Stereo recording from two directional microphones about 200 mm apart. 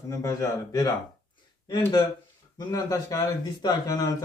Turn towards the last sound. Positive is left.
turn(degrees=20)  # may be behind; listen again after turning